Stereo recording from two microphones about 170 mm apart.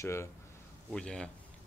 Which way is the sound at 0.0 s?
15° left (ahead or behind).